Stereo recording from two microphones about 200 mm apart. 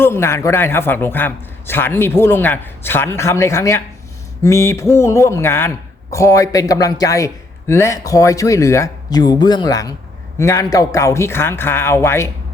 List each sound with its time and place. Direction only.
0.0 s a man's voice: 10° left (ahead or behind)